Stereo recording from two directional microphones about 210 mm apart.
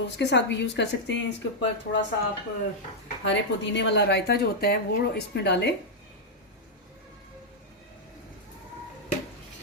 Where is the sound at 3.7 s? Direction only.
55° left (ahead or behind).